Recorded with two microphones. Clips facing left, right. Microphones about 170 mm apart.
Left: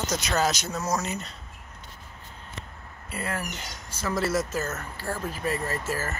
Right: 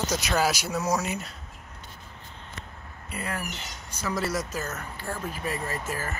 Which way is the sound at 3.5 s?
10° left (ahead or behind).